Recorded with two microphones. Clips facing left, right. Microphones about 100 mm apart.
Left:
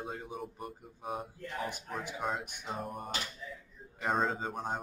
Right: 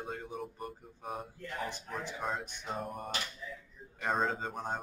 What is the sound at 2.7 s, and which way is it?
Speech, centre (ahead or behind).